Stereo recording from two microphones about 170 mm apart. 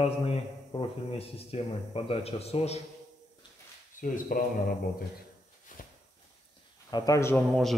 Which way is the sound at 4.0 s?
55° left (ahead or behind).